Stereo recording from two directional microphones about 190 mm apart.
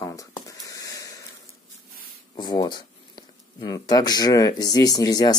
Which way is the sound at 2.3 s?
20° left (ahead or behind).